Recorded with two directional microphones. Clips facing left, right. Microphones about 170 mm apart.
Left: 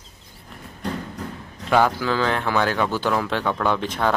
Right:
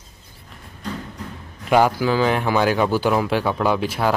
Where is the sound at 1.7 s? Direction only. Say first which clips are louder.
Right 3 dB; 10° right (ahead or behind).